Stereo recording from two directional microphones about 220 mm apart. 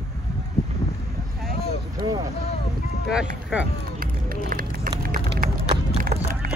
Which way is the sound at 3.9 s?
40° right (ahead or behind).